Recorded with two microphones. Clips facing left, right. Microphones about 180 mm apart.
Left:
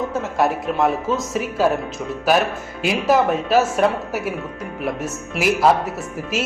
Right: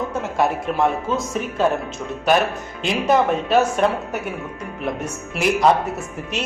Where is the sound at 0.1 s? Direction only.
Centre (ahead or behind).